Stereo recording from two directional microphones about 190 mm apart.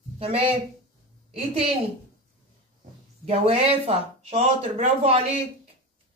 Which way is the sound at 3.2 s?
30° right (ahead or behind).